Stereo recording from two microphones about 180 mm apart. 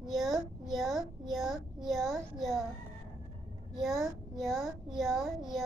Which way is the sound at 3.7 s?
Centre (ahead or behind).